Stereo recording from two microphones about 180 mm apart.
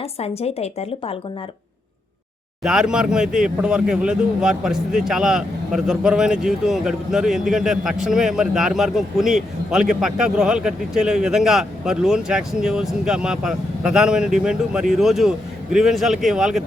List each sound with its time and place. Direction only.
0.0 s a woman's voice: 35° left (ahead or behind)
2.6 s speech: 5° right (ahead or behind)